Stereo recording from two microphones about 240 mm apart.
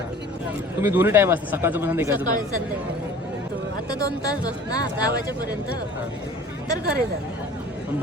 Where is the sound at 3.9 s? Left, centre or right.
Centre.